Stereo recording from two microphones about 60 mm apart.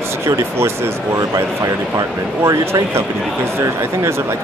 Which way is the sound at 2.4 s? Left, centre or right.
Right.